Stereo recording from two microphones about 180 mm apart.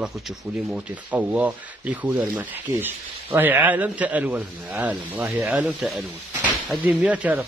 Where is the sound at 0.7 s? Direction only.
5° right (ahead or behind).